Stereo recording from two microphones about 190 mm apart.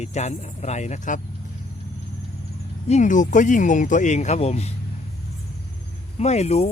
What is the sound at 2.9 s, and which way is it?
Speech, 40° left (ahead or behind).